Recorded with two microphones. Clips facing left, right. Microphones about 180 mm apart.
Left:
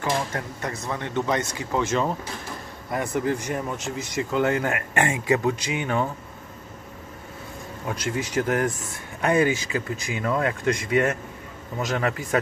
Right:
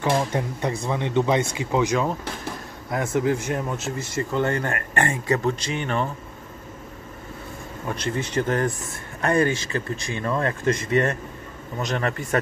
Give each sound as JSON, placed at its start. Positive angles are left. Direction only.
{"t": 0.3, "sound": "speech", "side_deg": -15}
{"t": 1.9, "sound": "speech", "side_deg": 0}
{"t": 8.1, "sound": "speech", "side_deg": 5}